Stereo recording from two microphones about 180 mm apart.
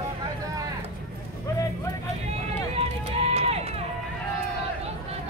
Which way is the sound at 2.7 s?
35° right (ahead or behind).